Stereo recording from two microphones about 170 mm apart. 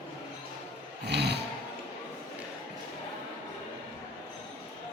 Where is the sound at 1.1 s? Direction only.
75° right (ahead or behind).